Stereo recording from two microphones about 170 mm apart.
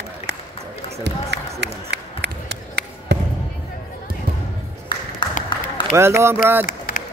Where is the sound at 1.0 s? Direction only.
85° right.